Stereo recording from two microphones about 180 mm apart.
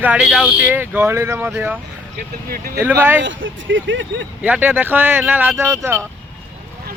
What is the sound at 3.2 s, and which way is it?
Speech, 90° right.